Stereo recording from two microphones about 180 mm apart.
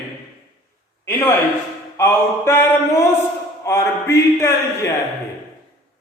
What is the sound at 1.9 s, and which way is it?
A man's voice, 15° left (ahead or behind).